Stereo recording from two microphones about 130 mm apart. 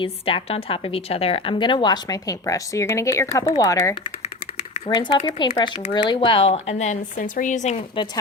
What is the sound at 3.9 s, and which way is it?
Typing, 45° left (ahead or behind).